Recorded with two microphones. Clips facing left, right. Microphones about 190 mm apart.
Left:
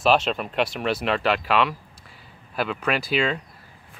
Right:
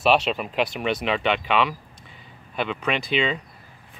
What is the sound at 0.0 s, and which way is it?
Speech, centre (ahead or behind).